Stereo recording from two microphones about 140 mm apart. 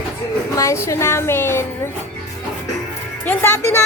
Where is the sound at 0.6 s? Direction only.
20° left (ahead or behind).